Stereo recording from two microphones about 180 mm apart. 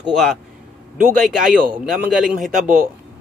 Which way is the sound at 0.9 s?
45° right (ahead or behind).